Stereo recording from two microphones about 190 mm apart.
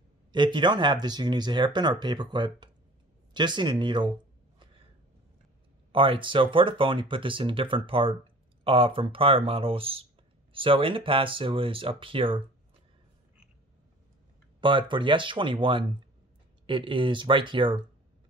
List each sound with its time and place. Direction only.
0.3 s speech: 25° right (ahead or behind)
5.9 s speech: 25° right (ahead or behind)
14.6 s speech: 25° right (ahead or behind)